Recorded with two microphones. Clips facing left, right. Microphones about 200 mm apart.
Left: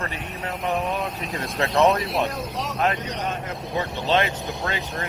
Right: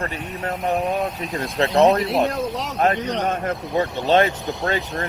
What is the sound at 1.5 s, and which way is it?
Speech, 30° right (ahead or behind).